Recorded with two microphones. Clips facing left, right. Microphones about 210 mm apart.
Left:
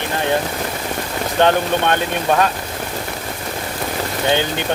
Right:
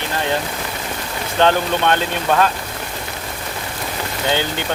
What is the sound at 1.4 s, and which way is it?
Speech, 15° left (ahead or behind).